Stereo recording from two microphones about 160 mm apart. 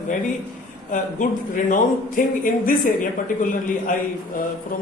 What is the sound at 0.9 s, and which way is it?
Speech, 55° left (ahead or behind).